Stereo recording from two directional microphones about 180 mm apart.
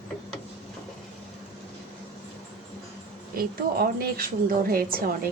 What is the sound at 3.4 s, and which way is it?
A woman's voice, 55° right (ahead or behind).